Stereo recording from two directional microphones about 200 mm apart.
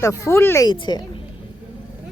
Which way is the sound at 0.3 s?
15° left (ahead or behind).